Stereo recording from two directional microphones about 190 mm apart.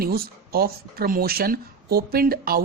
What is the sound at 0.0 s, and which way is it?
A woman's voice, 55° right (ahead or behind).